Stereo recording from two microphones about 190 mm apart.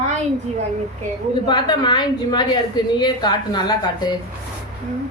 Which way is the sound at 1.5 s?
25° left (ahead or behind).